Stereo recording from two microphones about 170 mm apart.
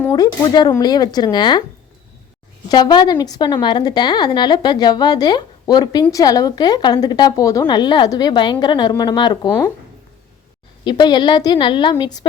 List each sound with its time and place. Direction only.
0.0 s a woman's voice: 20° left (ahead or behind)
2.6 s a woman's voice: 25° left (ahead or behind)
10.8 s a woman's voice: 25° left (ahead or behind)